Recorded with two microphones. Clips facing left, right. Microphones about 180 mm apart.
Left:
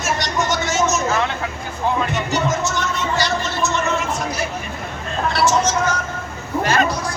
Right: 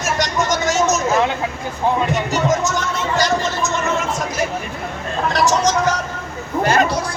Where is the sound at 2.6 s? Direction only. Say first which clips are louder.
Right 1 dB; 40° right (ahead or behind).